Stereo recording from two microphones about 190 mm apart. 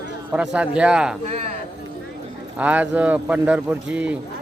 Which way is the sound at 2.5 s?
10° right (ahead or behind).